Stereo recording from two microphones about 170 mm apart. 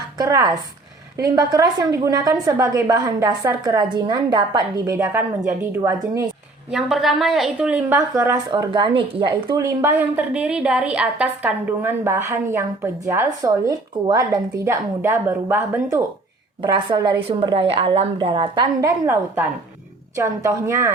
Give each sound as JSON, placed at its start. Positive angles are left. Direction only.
{"t": 0.2, "sound": "a woman's voice", "side_deg": -20}
{"t": 6.7, "sound": "a woman's voice", "side_deg": -5}
{"t": 16.6, "sound": "a woman's voice", "side_deg": -25}